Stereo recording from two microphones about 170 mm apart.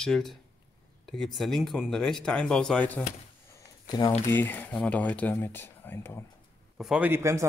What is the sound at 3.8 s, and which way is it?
Speech, 25° left (ahead or behind).